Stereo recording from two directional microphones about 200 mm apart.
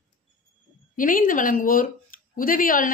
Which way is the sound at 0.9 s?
45° left (ahead or behind).